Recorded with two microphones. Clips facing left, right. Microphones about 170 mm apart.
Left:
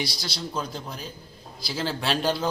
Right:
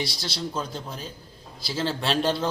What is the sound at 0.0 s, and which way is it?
A man's voice, centre (ahead or behind).